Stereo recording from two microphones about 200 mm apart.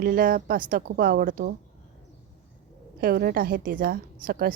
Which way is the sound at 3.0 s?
50° right (ahead or behind).